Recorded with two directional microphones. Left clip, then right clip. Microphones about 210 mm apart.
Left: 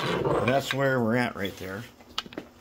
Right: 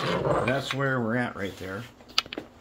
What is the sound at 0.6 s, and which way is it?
Speech, 35° left (ahead or behind).